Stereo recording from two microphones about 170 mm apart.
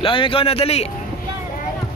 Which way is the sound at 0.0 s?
30° left (ahead or behind).